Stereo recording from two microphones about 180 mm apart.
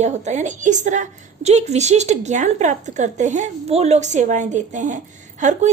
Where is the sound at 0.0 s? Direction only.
40° right (ahead or behind).